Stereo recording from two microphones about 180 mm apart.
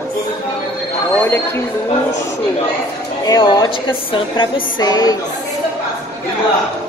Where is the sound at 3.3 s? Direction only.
25° left (ahead or behind).